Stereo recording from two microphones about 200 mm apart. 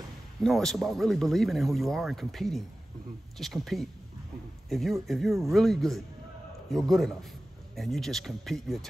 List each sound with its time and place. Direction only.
0.4 s speech: centre (ahead or behind)